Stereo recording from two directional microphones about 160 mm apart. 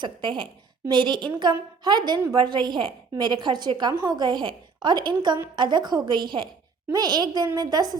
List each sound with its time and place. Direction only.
0.0 s a woman's voice: 30° right (ahead or behind)